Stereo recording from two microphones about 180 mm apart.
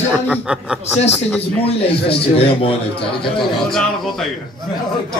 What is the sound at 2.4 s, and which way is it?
Speech, 30° left (ahead or behind).